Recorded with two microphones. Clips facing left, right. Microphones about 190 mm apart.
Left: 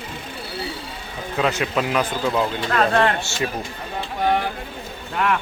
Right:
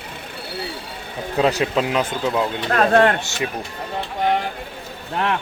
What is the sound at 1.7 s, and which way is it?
Speech, 20° right (ahead or behind).